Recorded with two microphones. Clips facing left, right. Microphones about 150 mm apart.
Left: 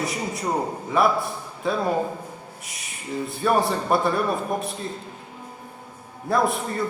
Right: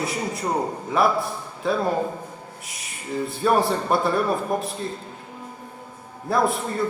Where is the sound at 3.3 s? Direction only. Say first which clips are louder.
Right 1 dB; centre (ahead or behind).